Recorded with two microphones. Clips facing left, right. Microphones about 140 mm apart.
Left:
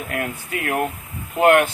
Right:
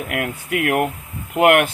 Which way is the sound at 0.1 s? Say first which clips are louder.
Right 3 dB; 75° right (ahead or behind).